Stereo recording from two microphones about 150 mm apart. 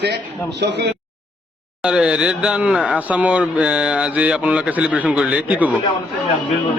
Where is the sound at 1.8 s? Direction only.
5° right (ahead or behind).